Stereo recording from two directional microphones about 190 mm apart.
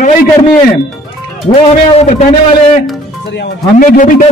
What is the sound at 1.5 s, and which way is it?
Speech, 35° left (ahead or behind).